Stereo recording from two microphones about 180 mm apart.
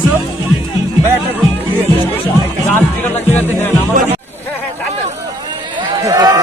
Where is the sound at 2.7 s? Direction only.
10° left (ahead or behind).